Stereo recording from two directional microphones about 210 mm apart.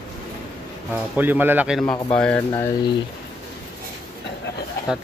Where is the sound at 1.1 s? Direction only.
10° right (ahead or behind).